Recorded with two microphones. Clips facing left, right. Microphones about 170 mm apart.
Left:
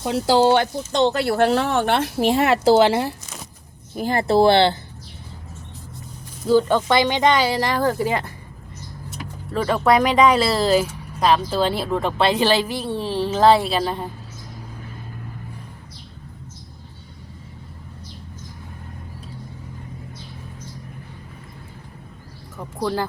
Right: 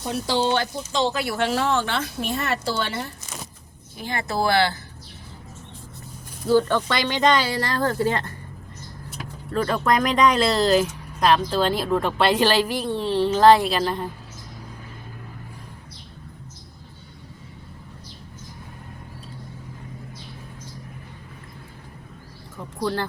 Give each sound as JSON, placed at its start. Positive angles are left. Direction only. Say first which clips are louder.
{"t": 0.0, "sound": "speech", "louder": "left 7 dB", "side_deg": 80}
{"t": 3.9, "sound": "speech", "louder": "left 9 dB", "side_deg": 40}
{"t": 6.5, "sound": "speech", "louder": "left 3 dB", "side_deg": 15}
{"t": 9.5, "sound": "speech", "louder": "left 4 dB", "side_deg": 5}